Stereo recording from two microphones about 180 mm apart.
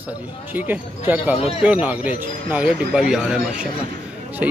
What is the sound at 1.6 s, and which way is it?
Speech, 5° right (ahead or behind).